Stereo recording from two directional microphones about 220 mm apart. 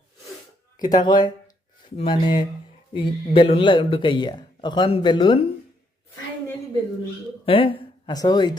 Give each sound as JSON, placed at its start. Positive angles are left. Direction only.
{"t": 1.0, "sound": "a man's voice", "side_deg": 20}
{"t": 7.4, "sound": "speech", "side_deg": 25}